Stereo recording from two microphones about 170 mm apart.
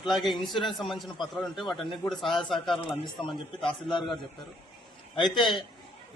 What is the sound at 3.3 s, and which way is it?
Speech, 30° left (ahead or behind).